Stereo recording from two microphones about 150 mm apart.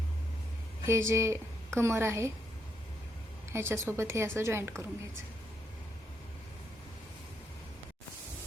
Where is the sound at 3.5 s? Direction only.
15° right (ahead or behind).